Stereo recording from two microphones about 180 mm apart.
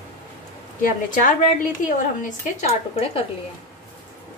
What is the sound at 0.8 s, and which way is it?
A woman's voice, 45° left (ahead or behind).